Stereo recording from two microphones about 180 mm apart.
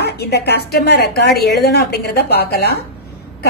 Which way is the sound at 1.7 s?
60° left (ahead or behind).